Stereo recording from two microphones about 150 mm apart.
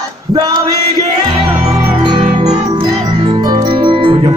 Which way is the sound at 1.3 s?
40° right (ahead or behind).